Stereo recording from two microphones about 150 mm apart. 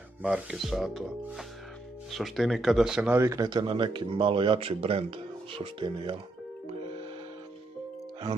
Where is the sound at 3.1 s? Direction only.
20° right (ahead or behind).